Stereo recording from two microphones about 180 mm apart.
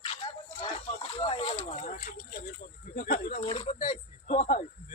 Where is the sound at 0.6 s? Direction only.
30° left (ahead or behind).